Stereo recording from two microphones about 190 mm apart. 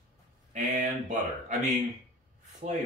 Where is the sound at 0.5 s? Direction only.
40° right (ahead or behind).